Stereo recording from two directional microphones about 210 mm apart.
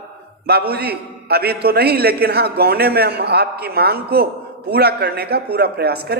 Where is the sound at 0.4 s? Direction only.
50° right (ahead or behind).